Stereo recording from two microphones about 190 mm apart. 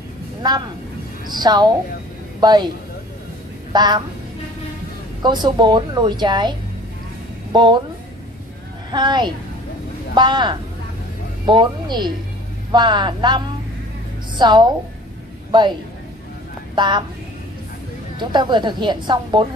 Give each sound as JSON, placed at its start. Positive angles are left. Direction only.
{"t": 0.4, "sound": "speech", "side_deg": -20}
{"t": 3.7, "sound": "speech", "side_deg": -20}
{"t": 5.2, "sound": "speech", "side_deg": -25}
{"t": 7.5, "sound": "speech", "side_deg": -25}
{"t": 8.9, "sound": "speech", "side_deg": -25}
{"t": 14.4, "sound": "speech", "side_deg": -25}
{"t": 16.7, "sound": "speech", "side_deg": -25}
{"t": 18.2, "sound": "speech", "side_deg": -25}